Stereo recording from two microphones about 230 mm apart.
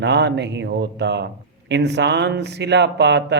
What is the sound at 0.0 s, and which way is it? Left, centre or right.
A man's voice, right.